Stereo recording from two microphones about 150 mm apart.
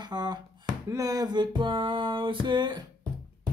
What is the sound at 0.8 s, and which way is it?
Music, 25° right (ahead or behind).